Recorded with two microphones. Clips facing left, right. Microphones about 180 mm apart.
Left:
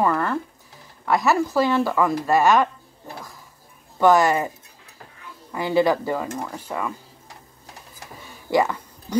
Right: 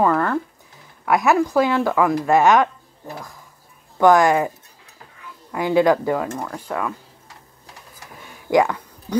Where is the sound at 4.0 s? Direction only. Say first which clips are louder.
Right 2 dB; 15° right (ahead or behind).